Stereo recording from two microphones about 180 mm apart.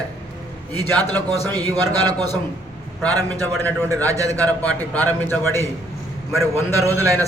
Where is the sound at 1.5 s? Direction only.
20° right (ahead or behind).